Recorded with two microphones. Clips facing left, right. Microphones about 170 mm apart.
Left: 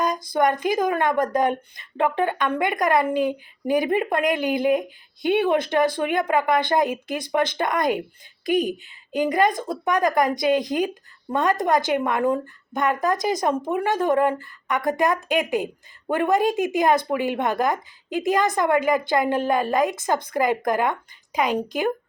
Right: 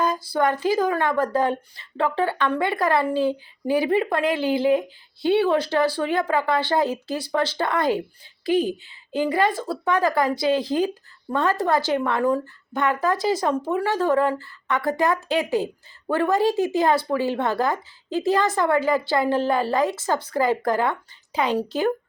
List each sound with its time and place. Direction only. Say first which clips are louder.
0.0 s speech: left 1 dB; 15° left (ahead or behind)